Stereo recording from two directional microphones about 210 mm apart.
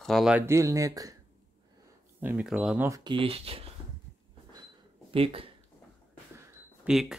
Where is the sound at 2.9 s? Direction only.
20° right (ahead or behind).